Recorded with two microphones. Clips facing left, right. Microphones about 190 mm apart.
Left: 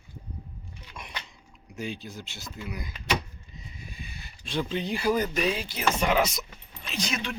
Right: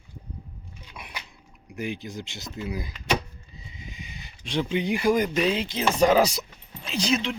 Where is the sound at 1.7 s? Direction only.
15° right (ahead or behind).